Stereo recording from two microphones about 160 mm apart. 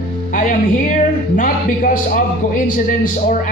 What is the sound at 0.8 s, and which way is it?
A man's voice, 55° left (ahead or behind).